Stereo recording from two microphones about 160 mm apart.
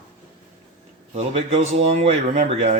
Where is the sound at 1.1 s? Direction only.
45° right (ahead or behind).